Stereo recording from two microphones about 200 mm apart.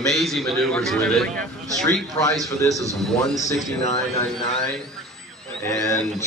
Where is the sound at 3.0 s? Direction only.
Centre (ahead or behind).